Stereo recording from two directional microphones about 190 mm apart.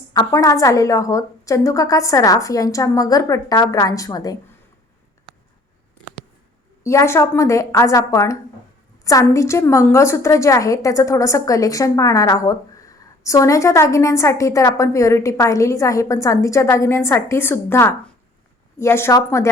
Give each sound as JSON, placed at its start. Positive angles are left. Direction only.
{"t": 0.1, "sound": "a woman's voice", "side_deg": 20}
{"t": 6.8, "sound": "a woman's voice", "side_deg": 15}